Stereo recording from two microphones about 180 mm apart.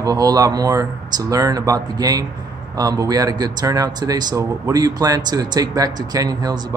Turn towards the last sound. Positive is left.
turn(degrees=-20)  # may be behind; listen again after turning